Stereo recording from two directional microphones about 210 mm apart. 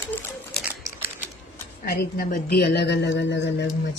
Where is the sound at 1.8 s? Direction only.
45° left (ahead or behind).